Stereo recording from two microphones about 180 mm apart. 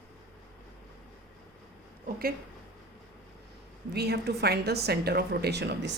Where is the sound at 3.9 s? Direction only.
60° right (ahead or behind).